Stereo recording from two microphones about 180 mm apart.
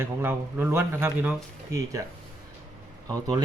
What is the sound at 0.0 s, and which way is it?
Speech, 10° right (ahead or behind).